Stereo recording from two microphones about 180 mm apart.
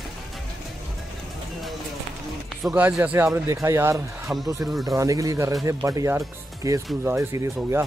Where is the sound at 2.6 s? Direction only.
5° right (ahead or behind).